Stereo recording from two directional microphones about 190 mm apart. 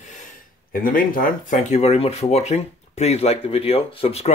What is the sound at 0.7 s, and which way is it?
Speech, 45° left (ahead or behind).